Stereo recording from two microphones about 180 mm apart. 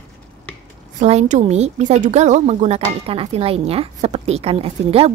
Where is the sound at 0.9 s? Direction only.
40° right (ahead or behind).